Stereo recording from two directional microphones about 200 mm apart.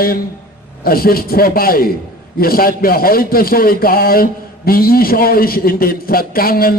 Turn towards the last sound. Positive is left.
turn(degrees=45)  # may be behind; listen again after turning